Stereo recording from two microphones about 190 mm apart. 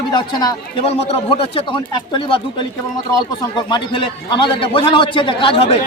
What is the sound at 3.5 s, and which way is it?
A man's voice, 25° left (ahead or behind).